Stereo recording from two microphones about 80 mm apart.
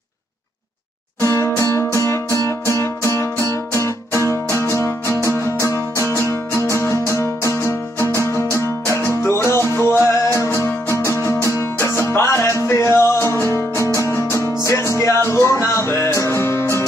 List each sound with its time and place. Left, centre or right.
1.2 s music: left